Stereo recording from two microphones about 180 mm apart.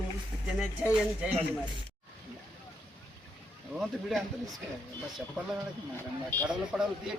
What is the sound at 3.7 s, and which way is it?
Music, centre (ahead or behind).